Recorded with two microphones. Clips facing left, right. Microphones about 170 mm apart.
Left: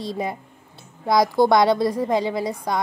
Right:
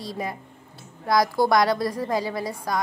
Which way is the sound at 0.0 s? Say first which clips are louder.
Left 4 dB; 25° left (ahead or behind).